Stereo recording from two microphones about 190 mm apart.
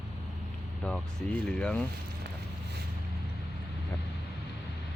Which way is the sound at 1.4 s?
5° left (ahead or behind).